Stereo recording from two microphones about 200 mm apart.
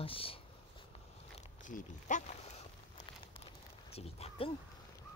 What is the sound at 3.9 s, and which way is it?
Speech, 30° left (ahead or behind).